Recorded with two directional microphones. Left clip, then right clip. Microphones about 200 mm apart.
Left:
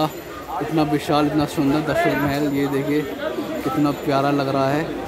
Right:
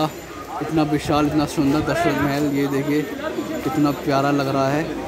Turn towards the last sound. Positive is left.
turn(degrees=0)  # may be behind; listen again after turning